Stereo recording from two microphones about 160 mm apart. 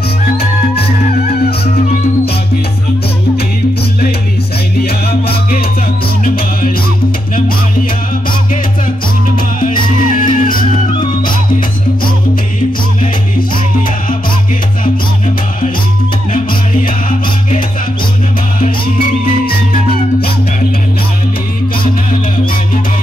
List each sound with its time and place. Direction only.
4.7 s music: 75° left (ahead or behind)
6.2 s music: 60° left (ahead or behind)
9.8 s music: 55° left (ahead or behind)
16.8 s music: 60° left (ahead or behind)